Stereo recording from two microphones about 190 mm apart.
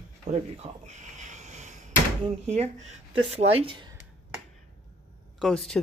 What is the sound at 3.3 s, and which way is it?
Speech, 30° right (ahead or behind).